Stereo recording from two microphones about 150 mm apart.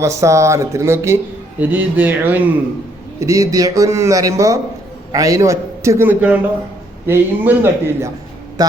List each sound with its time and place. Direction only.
0.0 s speech: 20° right (ahead or behind)
3.2 s a man's voice: 20° right (ahead or behind)